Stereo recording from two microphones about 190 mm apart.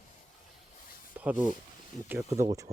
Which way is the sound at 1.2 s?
10° right (ahead or behind).